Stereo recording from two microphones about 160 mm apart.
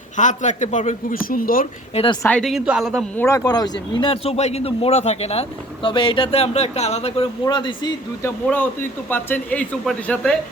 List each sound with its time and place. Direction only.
0.2 s a man's voice: 50° left (ahead or behind)
2.2 s speech: 5° left (ahead or behind)
3.2 s speech: 20° left (ahead or behind); by 7.3 s 40° left (ahead or behind)
7.4 s speech: 30° left (ahead or behind)
8.2 s speech: 10° left (ahead or behind)